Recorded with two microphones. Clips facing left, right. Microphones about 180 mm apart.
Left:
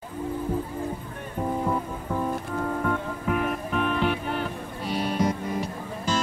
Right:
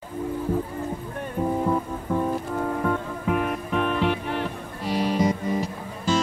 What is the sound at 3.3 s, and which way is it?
Music, centre (ahead or behind).